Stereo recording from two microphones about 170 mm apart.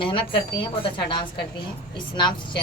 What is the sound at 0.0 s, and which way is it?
Speech, 30° left (ahead or behind).